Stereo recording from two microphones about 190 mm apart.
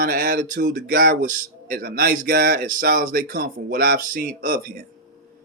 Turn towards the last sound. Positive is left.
turn(degrees=-45)  # may be behind; listen again after turning